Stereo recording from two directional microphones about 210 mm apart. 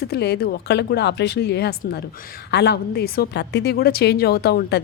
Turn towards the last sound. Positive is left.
turn(degrees=50)  # may be behind; listen again after turning